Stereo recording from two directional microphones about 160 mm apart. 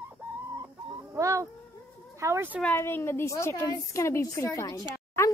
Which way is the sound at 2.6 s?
15° left (ahead or behind).